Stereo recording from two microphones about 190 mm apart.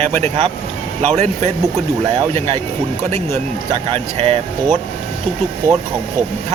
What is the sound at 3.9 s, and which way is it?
Speech, 30° right (ahead or behind).